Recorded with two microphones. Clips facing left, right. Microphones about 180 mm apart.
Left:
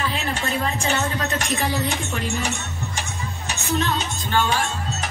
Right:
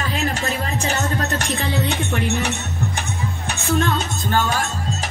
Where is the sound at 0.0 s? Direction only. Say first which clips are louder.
Right 2 dB; 40° right (ahead or behind).